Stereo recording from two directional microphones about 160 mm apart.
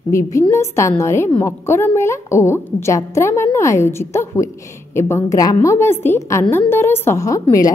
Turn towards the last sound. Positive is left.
turn(degrees=20)  # may be behind; listen again after turning